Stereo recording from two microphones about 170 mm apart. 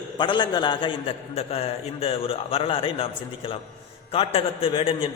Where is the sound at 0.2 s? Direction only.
25° left (ahead or behind).